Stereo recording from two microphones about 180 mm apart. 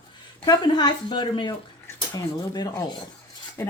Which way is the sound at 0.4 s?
25° left (ahead or behind).